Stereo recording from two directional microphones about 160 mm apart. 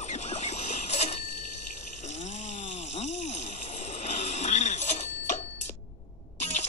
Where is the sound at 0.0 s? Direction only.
45° left (ahead or behind).